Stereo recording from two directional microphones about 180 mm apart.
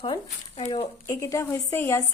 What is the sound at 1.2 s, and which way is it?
Speech, 15° left (ahead or behind).